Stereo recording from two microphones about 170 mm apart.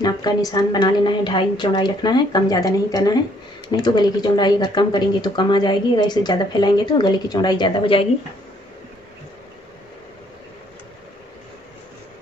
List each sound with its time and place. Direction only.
0.0 s speech: 20° left (ahead or behind)